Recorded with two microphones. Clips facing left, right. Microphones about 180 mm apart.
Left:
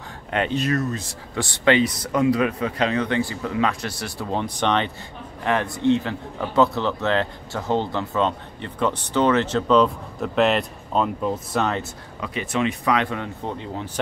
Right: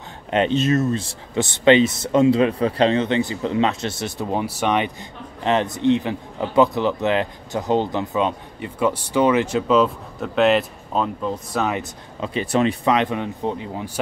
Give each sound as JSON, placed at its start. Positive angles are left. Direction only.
{"t": 0.3, "sound": "speech", "side_deg": -20}
{"t": 4.4, "sound": "speech", "side_deg": -10}
{"t": 5.4, "sound": "speech", "side_deg": -20}
{"t": 12.2, "sound": "speech", "side_deg": -35}
{"t": 12.9, "sound": "speech", "side_deg": -20}